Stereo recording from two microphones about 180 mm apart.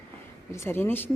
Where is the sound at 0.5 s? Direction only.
15° left (ahead or behind).